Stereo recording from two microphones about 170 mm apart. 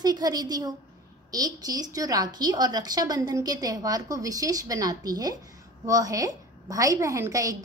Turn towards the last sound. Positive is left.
turn(degrees=-20)  # may be behind; listen again after turning